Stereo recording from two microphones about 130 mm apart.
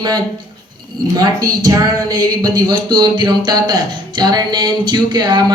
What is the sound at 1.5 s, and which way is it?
Speech, 30° right (ahead or behind).